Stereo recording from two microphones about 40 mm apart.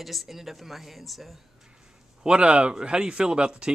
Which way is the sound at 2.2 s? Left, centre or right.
Right.